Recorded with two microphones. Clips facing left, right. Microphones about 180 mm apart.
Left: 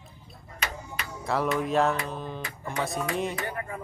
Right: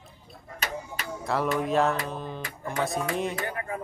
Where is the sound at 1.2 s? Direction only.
Centre (ahead or behind).